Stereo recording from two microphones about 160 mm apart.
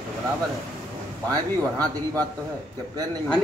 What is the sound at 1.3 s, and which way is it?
Speech, 25° right (ahead or behind).